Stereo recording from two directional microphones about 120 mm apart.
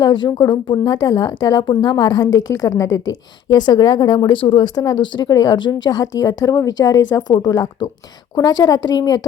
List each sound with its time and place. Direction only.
0.0 s speech: 40° left (ahead or behind)
3.7 s speech: 35° left (ahead or behind)